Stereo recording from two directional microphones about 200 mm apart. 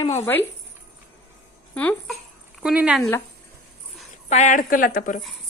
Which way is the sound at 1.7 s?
5° left (ahead or behind).